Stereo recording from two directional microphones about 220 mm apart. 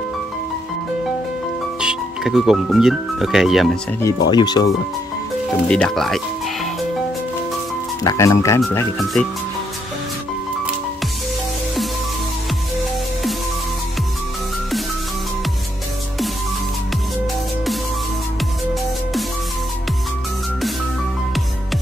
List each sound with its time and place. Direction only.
1.8 s speech: centre (ahead or behind)
4.3 s speech: 20° left (ahead or behind)
5.7 s music: 5° left (ahead or behind)
8.0 s speech: 15° left (ahead or behind)
8.9 s speech: centre (ahead or behind)